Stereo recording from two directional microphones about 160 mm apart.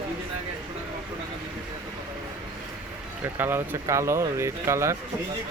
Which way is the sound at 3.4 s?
15° right (ahead or behind).